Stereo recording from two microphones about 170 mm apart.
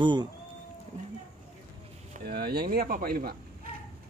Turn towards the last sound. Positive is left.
turn(degrees=-60)  # may be behind; listen again after turning